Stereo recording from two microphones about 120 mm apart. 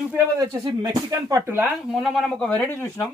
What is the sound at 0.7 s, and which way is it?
Speech, 35° right (ahead or behind).